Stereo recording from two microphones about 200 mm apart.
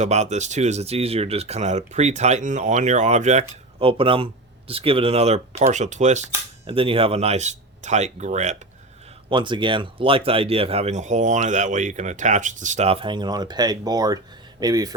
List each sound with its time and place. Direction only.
0.0 s speech: 35° right (ahead or behind)
9.3 s speech: 25° right (ahead or behind)